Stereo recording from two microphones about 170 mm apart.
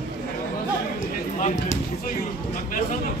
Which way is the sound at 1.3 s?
45° left (ahead or behind).